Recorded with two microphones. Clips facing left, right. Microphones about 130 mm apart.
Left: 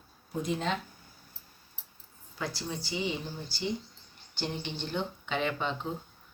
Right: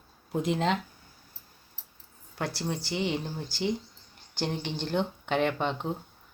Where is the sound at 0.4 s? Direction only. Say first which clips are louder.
Right 4 dB; 90° right.